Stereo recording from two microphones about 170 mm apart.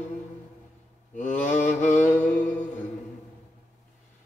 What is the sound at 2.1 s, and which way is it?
Music, 10° left (ahead or behind).